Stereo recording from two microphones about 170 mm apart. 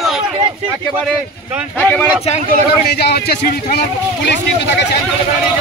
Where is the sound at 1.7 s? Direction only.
5° left (ahead or behind).